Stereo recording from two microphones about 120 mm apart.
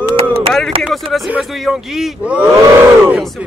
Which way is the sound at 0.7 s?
55° right (ahead or behind).